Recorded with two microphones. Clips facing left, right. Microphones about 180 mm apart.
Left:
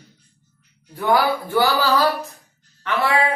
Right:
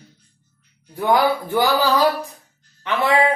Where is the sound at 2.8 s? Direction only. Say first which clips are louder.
Even; 20° right (ahead or behind).